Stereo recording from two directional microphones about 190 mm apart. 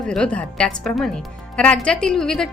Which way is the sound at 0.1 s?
5° left (ahead or behind).